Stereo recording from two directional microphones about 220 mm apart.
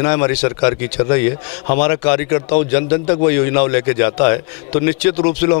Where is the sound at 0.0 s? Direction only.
15° left (ahead or behind).